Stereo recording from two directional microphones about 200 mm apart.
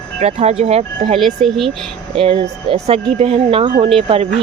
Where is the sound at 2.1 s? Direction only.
25° right (ahead or behind).